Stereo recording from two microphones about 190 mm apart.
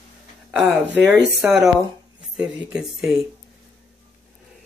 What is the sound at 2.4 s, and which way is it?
Speech, 5° right (ahead or behind).